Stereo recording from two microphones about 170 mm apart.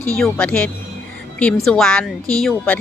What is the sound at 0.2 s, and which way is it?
Speech, 5° left (ahead or behind).